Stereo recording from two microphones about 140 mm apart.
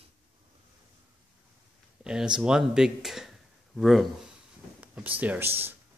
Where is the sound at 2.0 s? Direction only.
5° right (ahead or behind).